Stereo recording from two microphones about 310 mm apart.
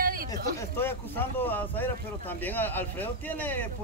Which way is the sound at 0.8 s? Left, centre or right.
Centre.